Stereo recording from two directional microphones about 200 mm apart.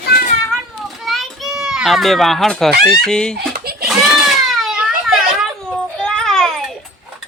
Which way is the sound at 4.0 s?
Centre (ahead or behind).